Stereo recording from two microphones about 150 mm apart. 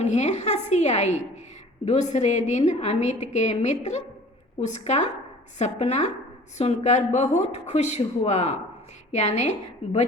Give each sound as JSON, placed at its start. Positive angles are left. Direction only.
{"t": 0.0, "sound": "a woman's voice", "side_deg": 50}